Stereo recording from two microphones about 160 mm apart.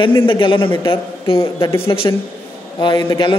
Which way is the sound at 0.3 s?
30° left (ahead or behind).